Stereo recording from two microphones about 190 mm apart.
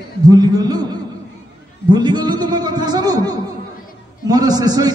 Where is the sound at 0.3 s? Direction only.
20° right (ahead or behind).